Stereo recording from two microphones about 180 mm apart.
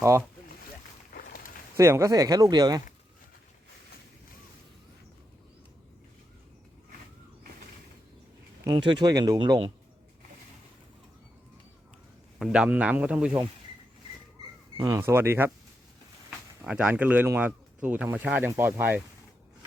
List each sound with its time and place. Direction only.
0.0 s speech: 15° right (ahead or behind)
1.7 s speech: 15° right (ahead or behind)
8.6 s speech: 25° right (ahead or behind)
12.4 s speech: 5° right (ahead or behind)
14.8 s speech: 20° right (ahead or behind)
16.6 s speech: 5° right (ahead or behind)